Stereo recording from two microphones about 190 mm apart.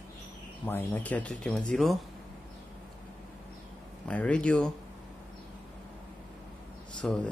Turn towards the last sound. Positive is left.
turn(degrees=5)  # may be behind; listen again after turning